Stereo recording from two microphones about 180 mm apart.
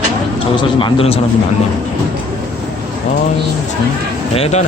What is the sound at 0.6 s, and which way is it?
Speech, 30° left (ahead or behind).